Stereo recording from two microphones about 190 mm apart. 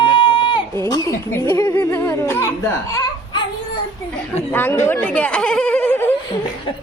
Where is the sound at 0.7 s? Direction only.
15° left (ahead or behind).